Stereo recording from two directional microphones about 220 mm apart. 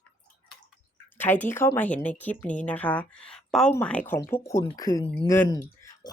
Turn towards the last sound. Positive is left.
turn(degrees=15)  # may be behind; listen again after turning